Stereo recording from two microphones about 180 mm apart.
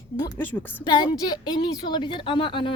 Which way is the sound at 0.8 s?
25° left (ahead or behind).